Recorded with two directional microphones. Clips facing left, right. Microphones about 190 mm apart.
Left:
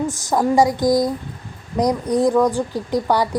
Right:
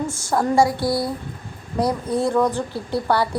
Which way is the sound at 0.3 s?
15° left (ahead or behind).